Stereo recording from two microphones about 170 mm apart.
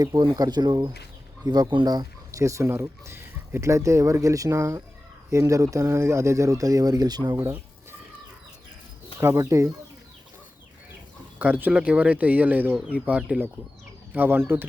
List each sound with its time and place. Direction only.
0.0 s speech: 20° right (ahead or behind)
7.3 s bird: 10° right (ahead or behind)
9.2 s speech: 15° right (ahead or behind)
11.3 s speech: 10° right (ahead or behind)